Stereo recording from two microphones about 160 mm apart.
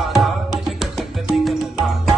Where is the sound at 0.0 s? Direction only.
Centre (ahead or behind).